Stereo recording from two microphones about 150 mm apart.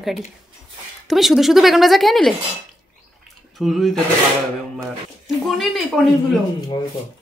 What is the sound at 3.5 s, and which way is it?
Speech, centre (ahead or behind).